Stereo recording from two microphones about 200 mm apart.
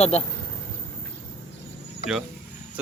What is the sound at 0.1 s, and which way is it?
Speech, 30° left (ahead or behind).